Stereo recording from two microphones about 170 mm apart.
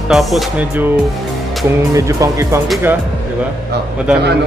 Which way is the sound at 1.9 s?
20° right (ahead or behind).